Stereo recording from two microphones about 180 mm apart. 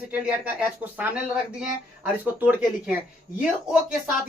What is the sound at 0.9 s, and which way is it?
Speech, 5° right (ahead or behind).